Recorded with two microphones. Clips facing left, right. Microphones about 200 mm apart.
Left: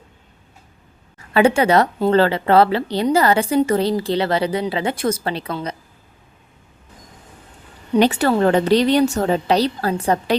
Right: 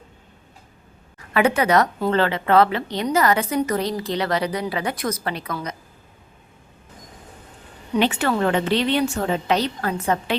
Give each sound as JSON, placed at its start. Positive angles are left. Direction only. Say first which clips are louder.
{"t": 1.3, "sound": "a woman's voice", "louder": "left 4 dB", "side_deg": 30}
{"t": 7.9, "sound": "a woman's voice", "louder": "left 5 dB", "side_deg": 40}